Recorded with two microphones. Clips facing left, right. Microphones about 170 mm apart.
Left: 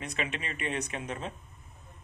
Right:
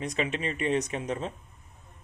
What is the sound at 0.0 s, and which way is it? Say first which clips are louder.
Speech: right 6 dB; 35° right (ahead or behind).